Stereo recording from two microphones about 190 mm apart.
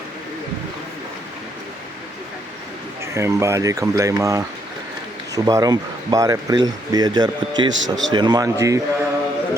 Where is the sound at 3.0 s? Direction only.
15° right (ahead or behind).